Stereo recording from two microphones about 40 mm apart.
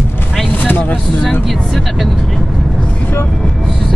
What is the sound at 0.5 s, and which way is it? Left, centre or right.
Vehicle, left.